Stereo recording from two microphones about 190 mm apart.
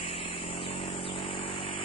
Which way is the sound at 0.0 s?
30° left (ahead or behind).